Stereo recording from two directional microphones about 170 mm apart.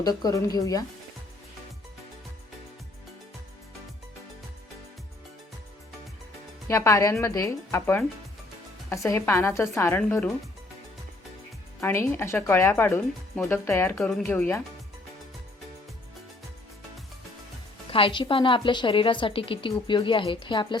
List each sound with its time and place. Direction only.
0.0 s a woman's voice: 25° left (ahead or behind)
6.7 s a woman's voice: 15° left (ahead or behind)
11.8 s a woman's voice: 15° left (ahead or behind)
17.9 s a woman's voice: 30° left (ahead or behind)